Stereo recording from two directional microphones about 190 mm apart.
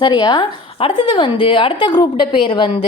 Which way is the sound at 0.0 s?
20° left (ahead or behind).